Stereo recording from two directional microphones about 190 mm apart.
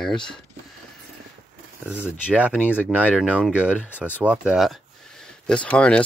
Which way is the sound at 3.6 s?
5° right (ahead or behind).